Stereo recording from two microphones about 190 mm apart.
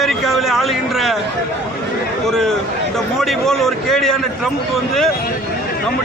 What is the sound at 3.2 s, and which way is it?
Speech, centre (ahead or behind).